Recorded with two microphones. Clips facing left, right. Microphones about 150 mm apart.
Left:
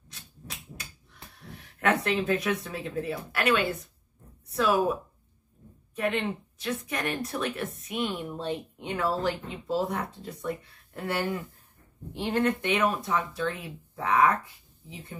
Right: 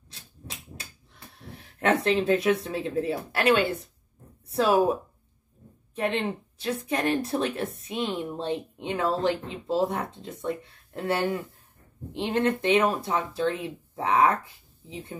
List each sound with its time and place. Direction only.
0.1 s a sound: 30° right (ahead or behind)
0.7 s speech: 30° right (ahead or behind)
5.9 s speech: 30° right (ahead or behind)